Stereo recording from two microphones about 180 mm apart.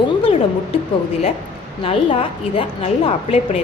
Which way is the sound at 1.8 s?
30° left (ahead or behind).